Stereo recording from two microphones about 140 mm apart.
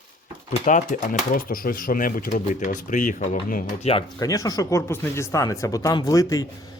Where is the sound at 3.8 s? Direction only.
45° left (ahead or behind).